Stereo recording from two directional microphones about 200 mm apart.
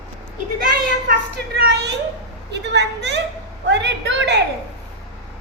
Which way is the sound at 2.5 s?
60° right (ahead or behind).